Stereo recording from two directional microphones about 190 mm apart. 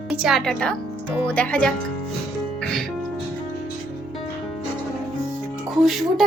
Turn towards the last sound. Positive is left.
turn(degrees=0)  # may be behind; listen again after turning